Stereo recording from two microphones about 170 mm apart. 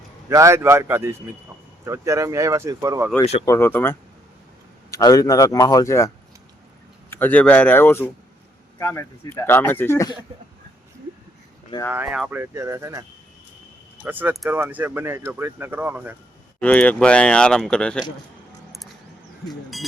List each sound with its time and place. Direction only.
0.3 s speech: 20° right (ahead or behind)
3.4 s a man's voice: 15° left (ahead or behind)
7.1 s speech: 10° left (ahead or behind)
11.9 s speech: 5° right (ahead or behind)
12.4 s speech: 15° right (ahead or behind)
16.6 s speech: 10° left (ahead or behind)